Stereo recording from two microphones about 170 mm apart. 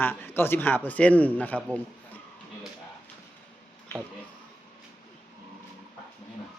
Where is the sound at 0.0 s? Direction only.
10° left (ahead or behind).